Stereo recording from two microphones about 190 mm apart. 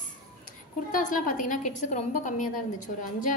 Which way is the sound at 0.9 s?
45° left (ahead or behind).